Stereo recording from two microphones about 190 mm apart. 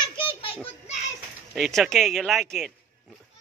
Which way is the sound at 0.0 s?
25° left (ahead or behind).